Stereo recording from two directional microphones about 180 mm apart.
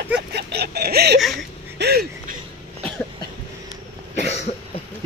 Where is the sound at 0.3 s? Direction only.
65° right (ahead or behind).